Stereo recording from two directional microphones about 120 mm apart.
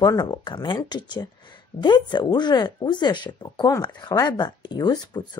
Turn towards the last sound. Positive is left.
turn(degrees=35)  # may be behind; listen again after turning